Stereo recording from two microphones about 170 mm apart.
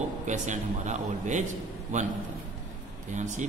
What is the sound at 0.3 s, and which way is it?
A man's voice, 45° right (ahead or behind).